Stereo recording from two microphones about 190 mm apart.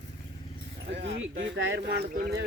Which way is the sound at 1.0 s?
70° right (ahead or behind).